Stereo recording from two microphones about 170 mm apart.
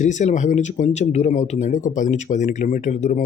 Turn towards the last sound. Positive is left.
turn(degrees=45)  # may be behind; listen again after turning